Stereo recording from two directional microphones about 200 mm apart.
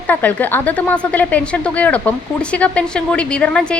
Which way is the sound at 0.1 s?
10° left (ahead or behind).